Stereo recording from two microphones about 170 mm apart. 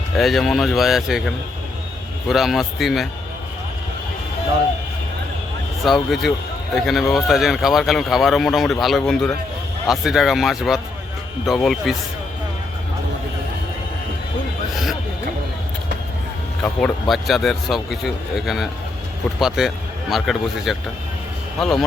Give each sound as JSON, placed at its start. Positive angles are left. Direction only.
{"t": 0.2, "sound": "speech", "side_deg": 0}
{"t": 5.8, "sound": "speech", "side_deg": 0}
{"t": 16.6, "sound": "speech", "side_deg": 5}